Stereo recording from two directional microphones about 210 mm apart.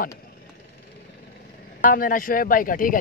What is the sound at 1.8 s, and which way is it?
Speech, 40° left (ahead or behind).